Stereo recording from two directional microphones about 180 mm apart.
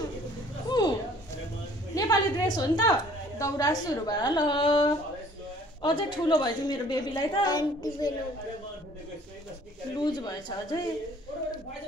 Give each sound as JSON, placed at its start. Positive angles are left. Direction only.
{"t": 0.7, "sound": "a sound", "side_deg": 25}
{"t": 2.0, "sound": "a woman's voice", "side_deg": 20}
{"t": 9.9, "sound": "a woman's voice", "side_deg": 25}